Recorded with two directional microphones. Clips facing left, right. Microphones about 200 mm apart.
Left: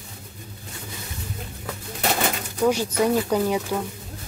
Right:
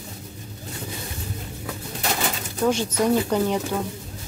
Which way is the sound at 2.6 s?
Centre (ahead or behind).